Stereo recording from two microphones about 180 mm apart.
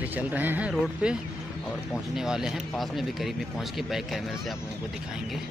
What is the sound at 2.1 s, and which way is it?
Speech, 5° right (ahead or behind).